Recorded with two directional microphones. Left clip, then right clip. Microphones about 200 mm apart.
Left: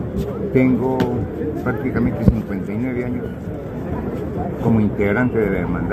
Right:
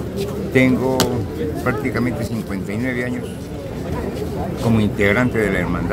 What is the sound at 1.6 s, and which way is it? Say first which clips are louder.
Speech: right 2 dB; 15° right (ahead or behind).